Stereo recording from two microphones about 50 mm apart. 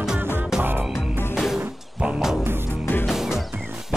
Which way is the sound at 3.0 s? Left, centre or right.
Centre.